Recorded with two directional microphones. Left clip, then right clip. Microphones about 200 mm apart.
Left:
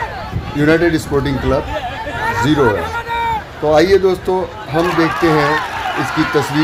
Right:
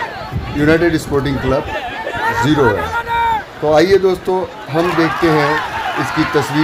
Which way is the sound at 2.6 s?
20° right (ahead or behind).